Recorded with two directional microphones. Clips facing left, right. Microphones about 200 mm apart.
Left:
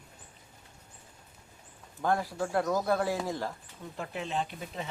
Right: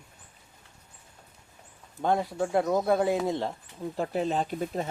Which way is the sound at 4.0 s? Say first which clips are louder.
Right 6 dB; 40° right (ahead or behind).